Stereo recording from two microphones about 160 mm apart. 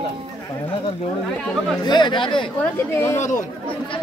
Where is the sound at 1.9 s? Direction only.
30° left (ahead or behind).